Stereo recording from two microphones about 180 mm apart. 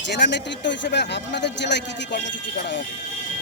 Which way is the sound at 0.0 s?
75° left (ahead or behind).